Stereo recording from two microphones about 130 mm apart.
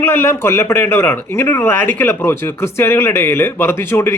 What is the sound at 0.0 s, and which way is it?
Speech, 20° left (ahead or behind).